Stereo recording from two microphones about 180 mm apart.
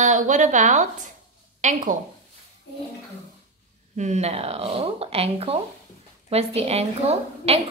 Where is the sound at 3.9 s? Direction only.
40° right (ahead or behind).